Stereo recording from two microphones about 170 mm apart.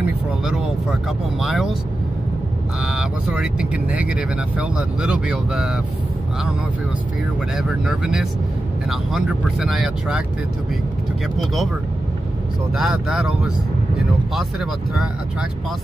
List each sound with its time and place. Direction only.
1.4 s speech: centre (ahead or behind)
2.8 s speech: 5° right (ahead or behind)
7.5 s speech: 5° right (ahead or behind)
11.3 s speech: centre (ahead or behind)
12.7 s speech: centre (ahead or behind)